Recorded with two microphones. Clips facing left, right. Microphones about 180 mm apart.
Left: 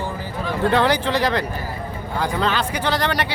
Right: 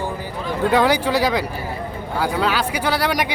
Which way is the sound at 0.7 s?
10° right (ahead or behind).